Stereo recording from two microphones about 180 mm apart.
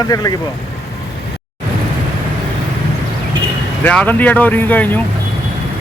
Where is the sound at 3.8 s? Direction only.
10° left (ahead or behind).